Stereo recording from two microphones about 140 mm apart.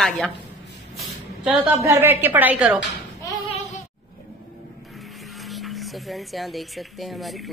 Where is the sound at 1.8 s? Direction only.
15° right (ahead or behind).